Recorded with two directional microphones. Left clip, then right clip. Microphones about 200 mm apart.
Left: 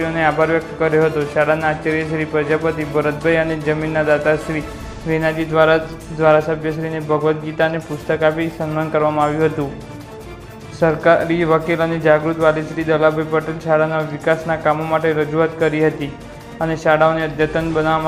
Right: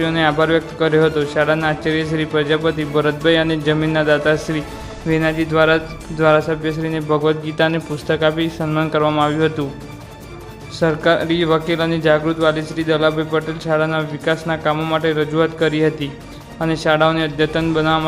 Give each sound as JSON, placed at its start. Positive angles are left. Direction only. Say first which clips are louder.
{"t": 0.0, "sound": "speech", "louder": "even", "side_deg": -30}
{"t": 10.8, "sound": "speech", "louder": "left 2 dB", "side_deg": -20}